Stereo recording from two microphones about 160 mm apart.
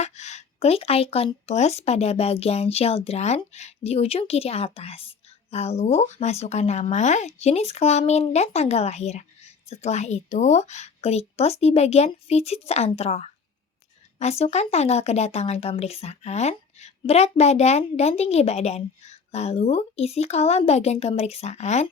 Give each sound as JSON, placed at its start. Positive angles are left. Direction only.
{"t": 0.0, "sound": "speech", "side_deg": 45}